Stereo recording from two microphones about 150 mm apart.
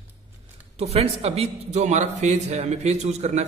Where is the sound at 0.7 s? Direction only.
45° right (ahead or behind).